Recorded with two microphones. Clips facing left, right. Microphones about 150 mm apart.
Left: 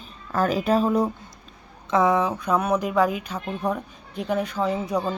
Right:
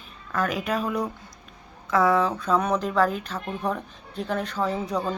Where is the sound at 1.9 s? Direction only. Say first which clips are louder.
Left 1 dB; 20° left (ahead or behind).